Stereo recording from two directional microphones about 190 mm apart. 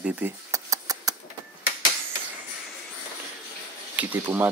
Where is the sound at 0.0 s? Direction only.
10° right (ahead or behind).